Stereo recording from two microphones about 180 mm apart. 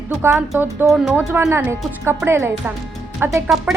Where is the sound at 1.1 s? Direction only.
15° right (ahead or behind).